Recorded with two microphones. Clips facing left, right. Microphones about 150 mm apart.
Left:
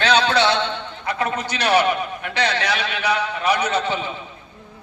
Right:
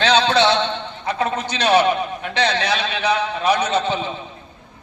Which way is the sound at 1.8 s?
20° right (ahead or behind).